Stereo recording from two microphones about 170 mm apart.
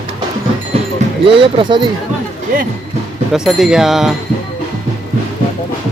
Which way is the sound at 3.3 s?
Centre (ahead or behind).